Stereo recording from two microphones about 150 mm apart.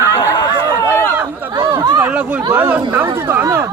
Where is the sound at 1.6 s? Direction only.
25° right (ahead or behind).